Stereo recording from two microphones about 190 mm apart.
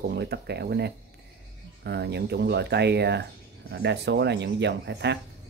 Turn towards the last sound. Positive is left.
turn(degrees=-65)  # may be behind; listen again after turning